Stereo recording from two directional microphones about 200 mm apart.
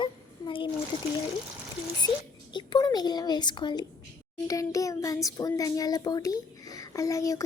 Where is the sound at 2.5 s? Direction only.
20° left (ahead or behind).